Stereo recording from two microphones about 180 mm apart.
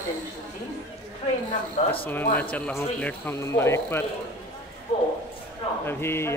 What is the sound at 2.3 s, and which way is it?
Speech, 10° left (ahead or behind).